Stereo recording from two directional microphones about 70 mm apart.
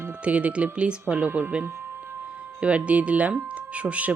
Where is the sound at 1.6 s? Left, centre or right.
Right.